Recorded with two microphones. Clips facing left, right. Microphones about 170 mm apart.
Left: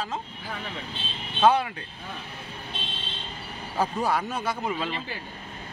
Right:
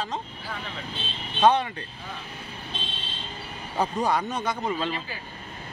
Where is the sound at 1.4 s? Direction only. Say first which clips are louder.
Even; 5° left (ahead or behind).